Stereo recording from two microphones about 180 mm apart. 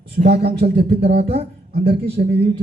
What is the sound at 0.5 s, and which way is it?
Speech, 60° right (ahead or behind).